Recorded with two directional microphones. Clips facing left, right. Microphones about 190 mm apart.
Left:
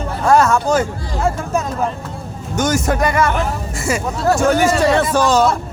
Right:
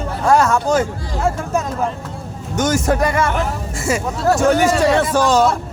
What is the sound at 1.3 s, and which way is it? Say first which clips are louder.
Speech: even; 50° right (ahead or behind).